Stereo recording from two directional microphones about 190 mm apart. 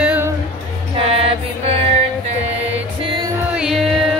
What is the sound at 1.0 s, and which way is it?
Mantra, 30° right (ahead or behind).